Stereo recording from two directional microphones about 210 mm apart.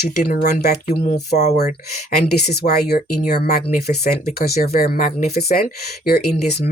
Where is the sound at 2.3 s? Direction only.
50° left (ahead or behind).